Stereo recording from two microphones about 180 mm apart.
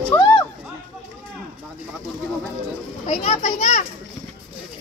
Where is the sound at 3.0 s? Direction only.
40° left (ahead or behind).